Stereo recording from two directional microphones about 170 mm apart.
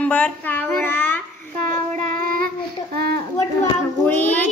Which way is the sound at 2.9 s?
65° right (ahead or behind).